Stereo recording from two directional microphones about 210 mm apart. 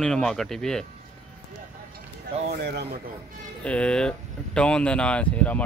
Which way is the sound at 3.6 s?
5° left (ahead or behind).